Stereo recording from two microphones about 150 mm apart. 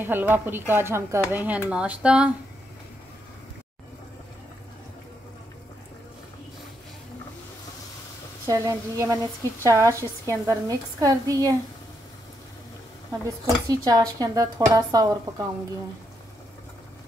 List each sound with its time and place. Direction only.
0.0 s a woman's voice: 15° right (ahead or behind)
8.5 s a woman's voice: 20° right (ahead or behind)
13.7 s a woman's voice: 25° right (ahead or behind)